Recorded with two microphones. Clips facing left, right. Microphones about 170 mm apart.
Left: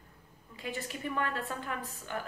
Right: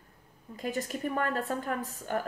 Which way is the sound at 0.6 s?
40° right (ahead or behind).